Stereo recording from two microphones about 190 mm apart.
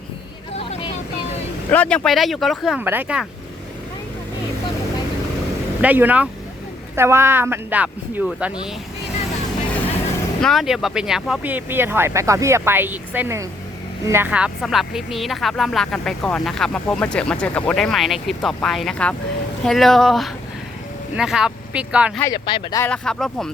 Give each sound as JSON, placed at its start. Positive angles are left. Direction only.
{"t": 0.5, "sound": "vehicle", "side_deg": 30}
{"t": 1.7, "sound": "speech", "side_deg": 5}
{"t": 5.8, "sound": "speech", "side_deg": -10}
{"t": 10.4, "sound": "speech", "side_deg": 0}
{"t": 22.2, "sound": "speech", "side_deg": 20}
{"t": 22.8, "sound": "speech", "side_deg": 5}